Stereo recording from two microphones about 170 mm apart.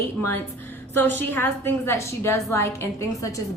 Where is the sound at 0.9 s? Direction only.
10° left (ahead or behind).